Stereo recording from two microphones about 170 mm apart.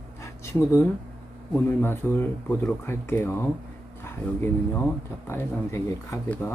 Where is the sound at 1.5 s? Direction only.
15° left (ahead or behind).